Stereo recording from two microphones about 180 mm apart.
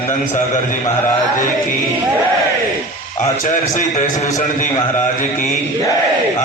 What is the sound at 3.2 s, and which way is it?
A man's voice, 45° left (ahead or behind).